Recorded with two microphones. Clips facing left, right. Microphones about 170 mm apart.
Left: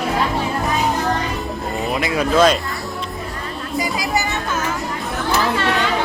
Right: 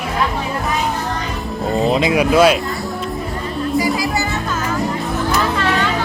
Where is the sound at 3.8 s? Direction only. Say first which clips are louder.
Right 3 dB; 20° left (ahead or behind).